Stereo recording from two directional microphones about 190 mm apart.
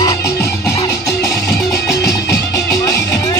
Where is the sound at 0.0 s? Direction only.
15° left (ahead or behind).